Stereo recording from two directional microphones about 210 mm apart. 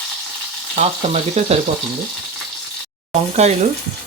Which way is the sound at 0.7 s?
30° right (ahead or behind).